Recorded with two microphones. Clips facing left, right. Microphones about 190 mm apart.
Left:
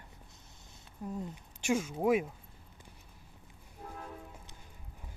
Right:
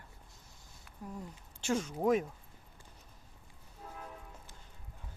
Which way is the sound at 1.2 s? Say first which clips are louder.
Left 4 dB; 10° left (ahead or behind).